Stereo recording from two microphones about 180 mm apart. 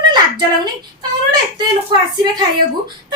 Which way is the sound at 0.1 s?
25° right (ahead or behind).